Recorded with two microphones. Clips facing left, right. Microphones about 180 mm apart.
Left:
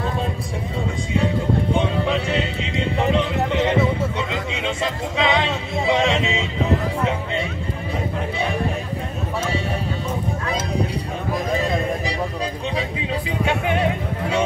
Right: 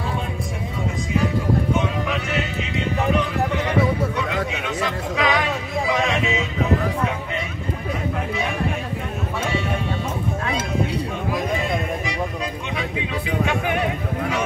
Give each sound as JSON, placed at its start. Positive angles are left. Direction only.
{"t": 1.1, "sound": "music", "side_deg": 30}
{"t": 13.5, "sound": "music", "side_deg": 30}